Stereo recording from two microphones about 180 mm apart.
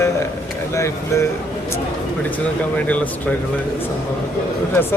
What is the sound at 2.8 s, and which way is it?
Speech, 10° left (ahead or behind).